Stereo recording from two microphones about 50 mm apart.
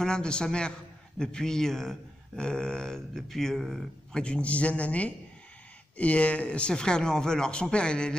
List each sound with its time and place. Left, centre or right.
0.0 s a man's voice: centre
2.4 s speech: centre
4.1 s a man's voice: left